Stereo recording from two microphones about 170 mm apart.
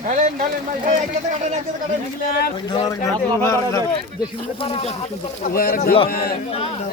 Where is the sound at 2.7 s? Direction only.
25° left (ahead or behind).